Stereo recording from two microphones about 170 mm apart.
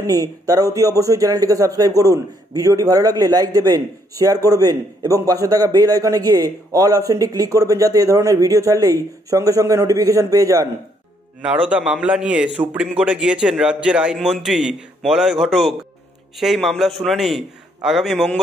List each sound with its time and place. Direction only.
0.0 s a man's voice: 20° right (ahead or behind)
11.7 s a man's voice: 5° right (ahead or behind)